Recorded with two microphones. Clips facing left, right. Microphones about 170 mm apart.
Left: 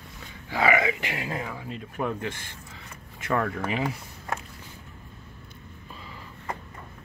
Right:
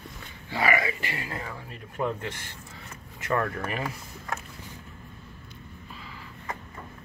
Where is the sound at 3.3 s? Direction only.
15° left (ahead or behind).